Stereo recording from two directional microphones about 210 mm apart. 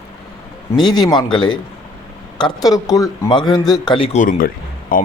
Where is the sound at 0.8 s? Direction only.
20° left (ahead or behind).